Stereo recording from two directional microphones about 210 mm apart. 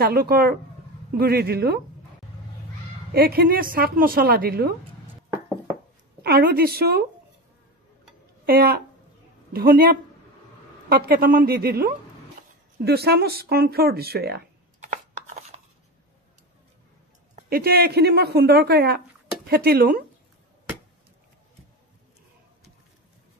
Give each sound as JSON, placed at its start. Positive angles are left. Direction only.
{"t": 0.0, "sound": "a woman's voice", "side_deg": -45}
{"t": 3.1, "sound": "a woman's voice", "side_deg": -45}
{"t": 6.2, "sound": "a woman's voice", "side_deg": -45}
{"t": 8.5, "sound": "a woman's voice", "side_deg": -45}
{"t": 14.8, "sound": "a sound", "side_deg": -35}
{"t": 17.5, "sound": "a woman's voice", "side_deg": -45}